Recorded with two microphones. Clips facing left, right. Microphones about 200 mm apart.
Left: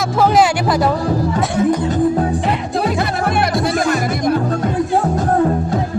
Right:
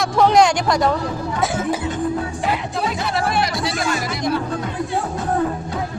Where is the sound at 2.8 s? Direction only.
60° left (ahead or behind).